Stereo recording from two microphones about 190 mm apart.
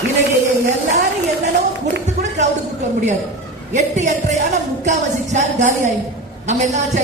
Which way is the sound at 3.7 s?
40° right (ahead or behind).